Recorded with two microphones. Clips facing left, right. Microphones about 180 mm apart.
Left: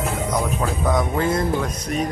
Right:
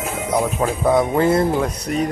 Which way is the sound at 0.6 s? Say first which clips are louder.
Right 5 dB; 30° right (ahead or behind).